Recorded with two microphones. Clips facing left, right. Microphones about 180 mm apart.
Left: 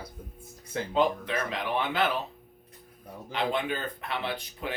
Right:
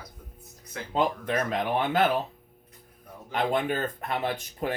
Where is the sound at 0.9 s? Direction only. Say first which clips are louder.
Right 1 dB; 45° right (ahead or behind).